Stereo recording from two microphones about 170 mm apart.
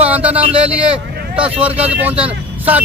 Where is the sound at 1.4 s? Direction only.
5° right (ahead or behind).